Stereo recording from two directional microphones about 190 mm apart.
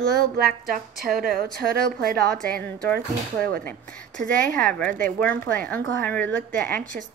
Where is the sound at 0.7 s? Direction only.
50° right (ahead or behind).